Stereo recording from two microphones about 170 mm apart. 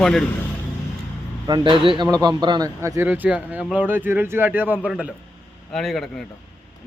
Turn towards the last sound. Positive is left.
turn(degrees=0)  # may be behind; listen again after turning